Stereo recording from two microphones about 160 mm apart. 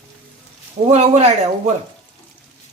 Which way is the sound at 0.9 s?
45° right (ahead or behind).